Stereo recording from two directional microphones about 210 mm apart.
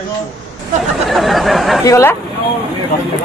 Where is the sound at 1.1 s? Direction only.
Centre (ahead or behind).